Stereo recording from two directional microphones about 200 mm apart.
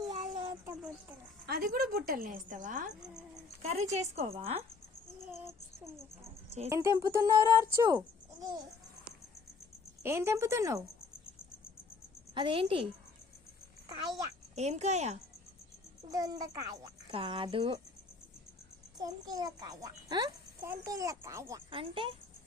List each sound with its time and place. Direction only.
0.1 s a sound: 35° right (ahead or behind)
1.5 s a woman's voice: 45° right (ahead or behind)
2.9 s speech: 5° right (ahead or behind)
3.6 s speech: 35° right (ahead or behind)
5.3 s child singing: 15° right (ahead or behind)
6.7 s a child's voice: 15° right (ahead or behind)
10.0 s a child's voice: 10° right (ahead or behind)
12.3 s speech: 25° right (ahead or behind)
13.8 s a sound: 20° right (ahead or behind)
14.5 s speech: 35° right (ahead or behind)
16.0 s speech: 20° right (ahead or behind)
18.9 s a child's voice: 20° right (ahead or behind)
21.7 s speech: 25° right (ahead or behind)